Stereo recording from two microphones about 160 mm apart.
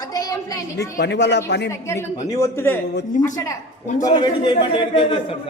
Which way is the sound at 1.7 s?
20° left (ahead or behind).